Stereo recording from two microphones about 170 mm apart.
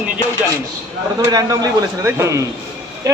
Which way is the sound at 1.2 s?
20° right (ahead or behind).